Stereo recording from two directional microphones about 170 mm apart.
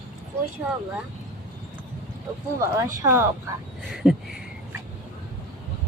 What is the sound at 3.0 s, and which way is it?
Speech, 15° right (ahead or behind).